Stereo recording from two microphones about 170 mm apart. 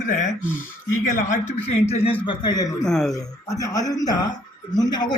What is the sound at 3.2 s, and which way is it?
A man's voice, 20° left (ahead or behind).